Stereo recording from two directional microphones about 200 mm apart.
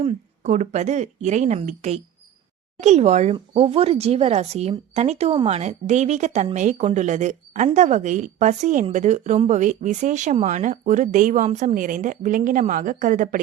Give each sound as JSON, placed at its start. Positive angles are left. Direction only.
{"t": 0.0, "sound": "speech", "side_deg": -30}